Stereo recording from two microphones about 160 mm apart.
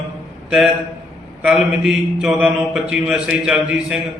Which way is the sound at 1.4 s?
5° right (ahead or behind).